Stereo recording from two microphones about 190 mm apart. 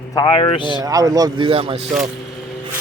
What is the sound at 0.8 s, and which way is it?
Speech, 20° right (ahead or behind).